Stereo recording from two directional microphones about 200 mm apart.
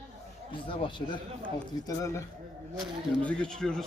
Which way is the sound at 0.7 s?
25° left (ahead or behind).